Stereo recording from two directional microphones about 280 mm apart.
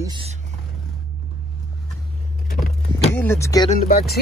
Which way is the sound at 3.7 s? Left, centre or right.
Left.